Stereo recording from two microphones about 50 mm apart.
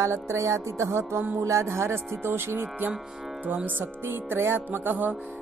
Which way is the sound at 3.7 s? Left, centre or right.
Right.